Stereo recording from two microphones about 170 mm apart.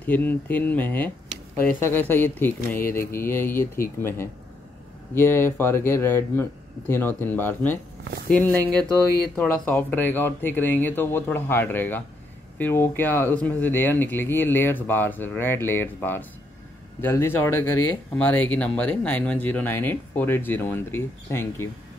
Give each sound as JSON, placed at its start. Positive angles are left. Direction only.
{"t": 0.0, "sound": "speech", "side_deg": 10}
{"t": 5.1, "sound": "speech", "side_deg": 15}
{"t": 8.0, "sound": "speech", "side_deg": -75}
{"t": 8.3, "sound": "speech", "side_deg": 5}